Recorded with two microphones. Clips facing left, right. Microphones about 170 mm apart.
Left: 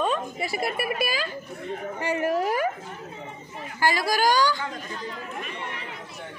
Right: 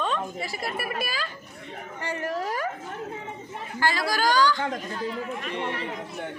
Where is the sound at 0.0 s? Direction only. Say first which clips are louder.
Left 2 dB; 10° left (ahead or behind).